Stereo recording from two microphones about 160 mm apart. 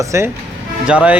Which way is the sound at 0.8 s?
5° right (ahead or behind).